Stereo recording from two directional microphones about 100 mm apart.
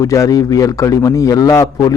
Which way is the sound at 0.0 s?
35° left (ahead or behind).